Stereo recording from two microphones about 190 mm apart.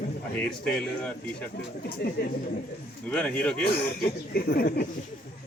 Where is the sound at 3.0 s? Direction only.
5° left (ahead or behind).